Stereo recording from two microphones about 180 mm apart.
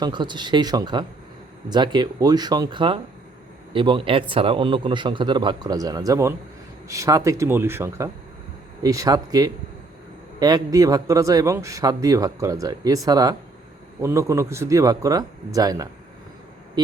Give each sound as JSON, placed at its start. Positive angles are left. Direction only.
{"t": 0.0, "sound": "a man's voice", "side_deg": -25}